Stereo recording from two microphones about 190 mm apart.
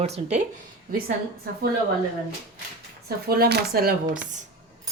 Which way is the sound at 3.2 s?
55° right (ahead or behind).